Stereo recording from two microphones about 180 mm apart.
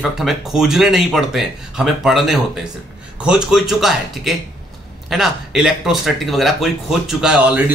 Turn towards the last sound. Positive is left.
turn(degrees=-5)  # may be behind; listen again after turning